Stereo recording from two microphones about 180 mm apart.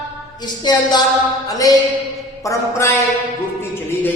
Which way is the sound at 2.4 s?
15° left (ahead or behind).